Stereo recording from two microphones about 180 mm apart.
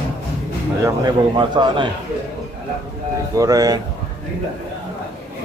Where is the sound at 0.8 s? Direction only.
25° right (ahead or behind).